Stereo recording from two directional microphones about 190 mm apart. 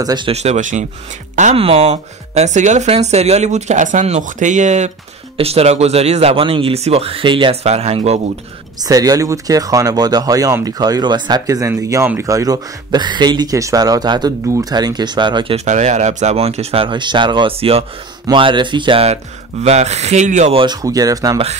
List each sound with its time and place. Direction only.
0.0 s speech: 20° right (ahead or behind)
0.3 s speech: 35° right (ahead or behind)
8.8 s speech: 20° right (ahead or behind)